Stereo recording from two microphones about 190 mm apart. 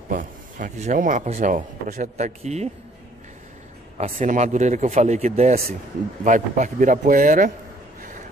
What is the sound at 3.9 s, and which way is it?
A man's voice, 35° right (ahead or behind).